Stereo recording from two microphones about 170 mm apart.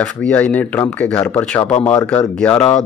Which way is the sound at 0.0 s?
10° left (ahead or behind).